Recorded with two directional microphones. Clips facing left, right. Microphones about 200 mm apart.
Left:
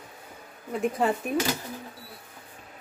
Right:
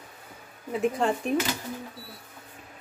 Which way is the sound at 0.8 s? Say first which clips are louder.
Even; 5° left (ahead or behind).